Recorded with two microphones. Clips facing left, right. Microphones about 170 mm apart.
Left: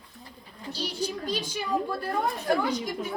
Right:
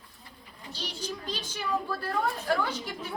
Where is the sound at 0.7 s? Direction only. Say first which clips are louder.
Left 6 dB; 10° left (ahead or behind).